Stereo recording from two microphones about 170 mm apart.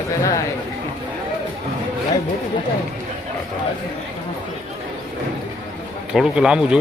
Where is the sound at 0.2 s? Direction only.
20° left (ahead or behind).